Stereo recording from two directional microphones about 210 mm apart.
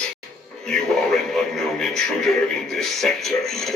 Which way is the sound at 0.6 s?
Centre (ahead or behind).